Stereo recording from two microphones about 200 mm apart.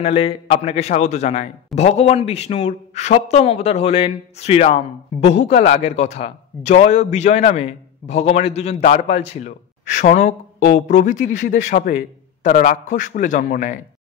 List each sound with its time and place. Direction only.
0.0 s a man's voice: 30° left (ahead or behind)